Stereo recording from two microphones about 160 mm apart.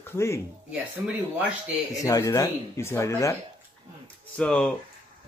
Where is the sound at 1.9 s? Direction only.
20° left (ahead or behind).